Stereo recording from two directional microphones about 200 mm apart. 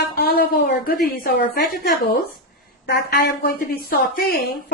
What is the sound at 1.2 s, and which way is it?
A woman's voice, 55° left (ahead or behind).